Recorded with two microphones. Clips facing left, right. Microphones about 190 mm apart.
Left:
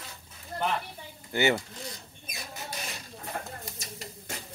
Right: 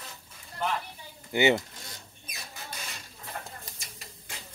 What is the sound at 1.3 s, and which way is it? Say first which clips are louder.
Speech: right 2 dB; 20° right (ahead or behind).